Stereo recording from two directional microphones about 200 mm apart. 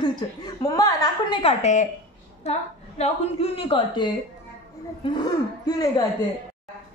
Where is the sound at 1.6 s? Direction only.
35° left (ahead or behind).